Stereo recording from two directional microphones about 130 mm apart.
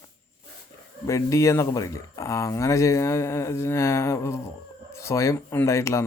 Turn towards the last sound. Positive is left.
turn(degrees=20)  # may be behind; listen again after turning